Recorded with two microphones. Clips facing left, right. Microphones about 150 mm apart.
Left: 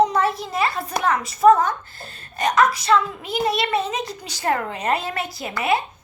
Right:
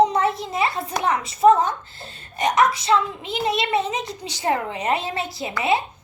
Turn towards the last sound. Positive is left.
turn(degrees=-25)  # may be behind; listen again after turning